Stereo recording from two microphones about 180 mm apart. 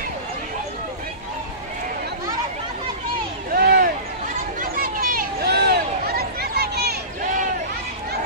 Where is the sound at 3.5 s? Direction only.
55° right (ahead or behind).